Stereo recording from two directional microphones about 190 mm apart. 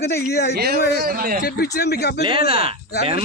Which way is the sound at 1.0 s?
50° right (ahead or behind).